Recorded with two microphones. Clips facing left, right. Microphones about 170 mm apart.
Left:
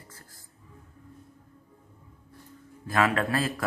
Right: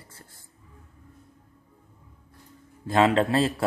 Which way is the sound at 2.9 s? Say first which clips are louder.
Right 5 dB; 25° right (ahead or behind).